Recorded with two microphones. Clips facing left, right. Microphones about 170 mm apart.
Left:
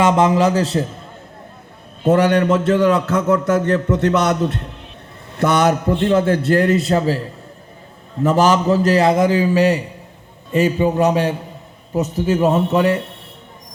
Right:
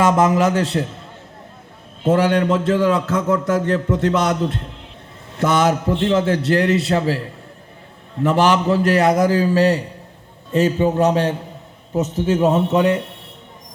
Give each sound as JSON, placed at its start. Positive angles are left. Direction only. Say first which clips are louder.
{"t": 0.0, "sound": "a man's voice", "louder": "left 1 dB", "side_deg": 25}
{"t": 2.0, "sound": "a man's voice", "louder": "left 2 dB", "side_deg": 65}
{"t": 12.5, "sound": "a man's voice", "louder": "even", "side_deg": -5}